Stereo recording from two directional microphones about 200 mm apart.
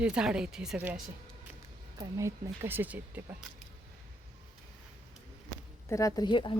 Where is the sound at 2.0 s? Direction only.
15° right (ahead or behind).